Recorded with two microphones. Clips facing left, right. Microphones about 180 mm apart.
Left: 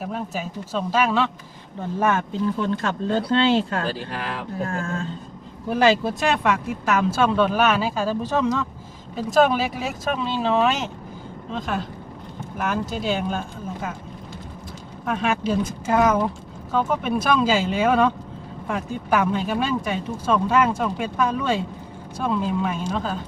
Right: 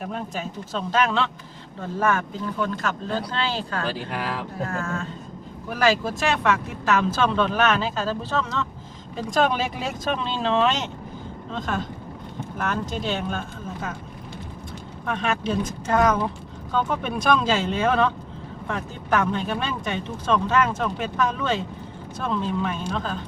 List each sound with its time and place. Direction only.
0.0 s speech: 5° left (ahead or behind)
1.8 s speech: 20° left (ahead or behind)
6.4 s speech: 10° left (ahead or behind)
15.0 s speech: 5° left (ahead or behind)